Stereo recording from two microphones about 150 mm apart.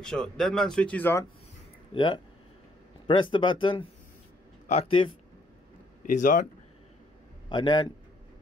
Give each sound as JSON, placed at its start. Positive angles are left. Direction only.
{"t": 0.0, "sound": "speech", "side_deg": 5}
{"t": 2.0, "sound": "speech", "side_deg": 30}
{"t": 6.0, "sound": "speech", "side_deg": 65}
{"t": 7.4, "sound": "a man's voice", "side_deg": 30}